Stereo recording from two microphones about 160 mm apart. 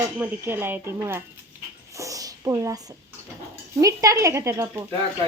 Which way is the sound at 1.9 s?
20° right (ahead or behind).